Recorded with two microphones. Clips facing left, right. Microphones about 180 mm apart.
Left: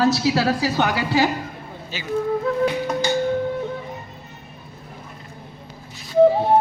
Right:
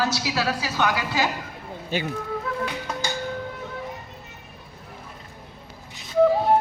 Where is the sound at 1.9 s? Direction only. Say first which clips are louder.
Right 9 dB; 55° right (ahead or behind).